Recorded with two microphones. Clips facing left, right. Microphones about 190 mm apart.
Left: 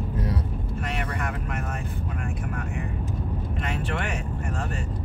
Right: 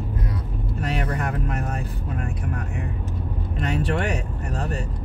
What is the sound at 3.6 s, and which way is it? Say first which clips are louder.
Speech: right 7 dB; 35° right (ahead or behind).